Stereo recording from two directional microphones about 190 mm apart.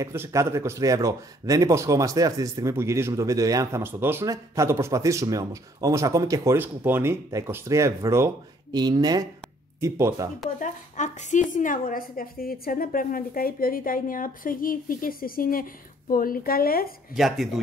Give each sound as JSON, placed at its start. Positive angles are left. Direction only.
{"t": 0.0, "sound": "speech", "side_deg": -15}
{"t": 10.6, "sound": "a woman's voice", "side_deg": 40}
{"t": 17.1, "sound": "speech", "side_deg": 0}